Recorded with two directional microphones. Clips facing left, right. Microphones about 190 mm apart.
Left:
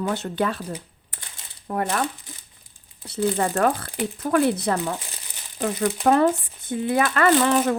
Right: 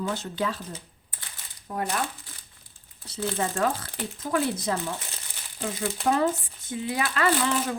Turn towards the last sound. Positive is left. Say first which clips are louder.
# left 6 dB
turn(degrees=60)  # may be behind; listen again after turning